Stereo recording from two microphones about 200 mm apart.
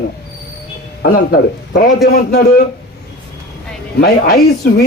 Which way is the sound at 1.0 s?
50° left (ahead or behind).